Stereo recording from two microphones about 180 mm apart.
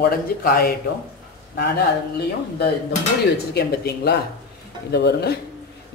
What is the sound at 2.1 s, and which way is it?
A woman's voice, 65° left (ahead or behind).